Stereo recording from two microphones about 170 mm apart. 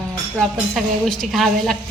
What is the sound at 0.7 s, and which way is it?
A woman's voice, centre (ahead or behind).